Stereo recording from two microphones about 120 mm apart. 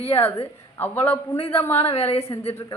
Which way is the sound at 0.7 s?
15° left (ahead or behind).